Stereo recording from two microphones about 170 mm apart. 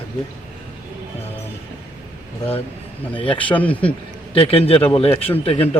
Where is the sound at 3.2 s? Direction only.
30° left (ahead or behind).